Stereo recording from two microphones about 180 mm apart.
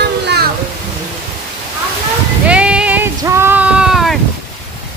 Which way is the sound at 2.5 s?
5° right (ahead or behind).